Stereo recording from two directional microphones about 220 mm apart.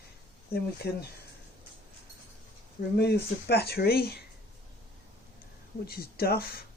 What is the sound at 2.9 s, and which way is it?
Speech, 50° left (ahead or behind).